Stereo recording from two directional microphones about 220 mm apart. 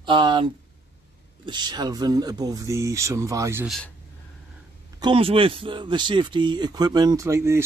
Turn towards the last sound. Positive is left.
turn(degrees=-15)  # may be behind; listen again after turning